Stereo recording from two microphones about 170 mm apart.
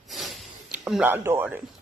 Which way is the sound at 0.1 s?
Centre (ahead or behind).